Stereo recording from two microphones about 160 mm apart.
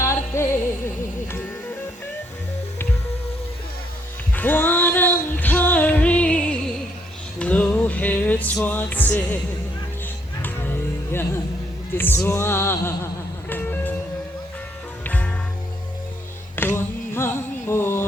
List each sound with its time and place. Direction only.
0.3 s music: 15° left (ahead or behind)
4.4 s music: 10° left (ahead or behind)
10.4 s music: 15° left (ahead or behind)
15.0 s music: 10° left (ahead or behind)
16.6 s a sound: 15° left (ahead or behind)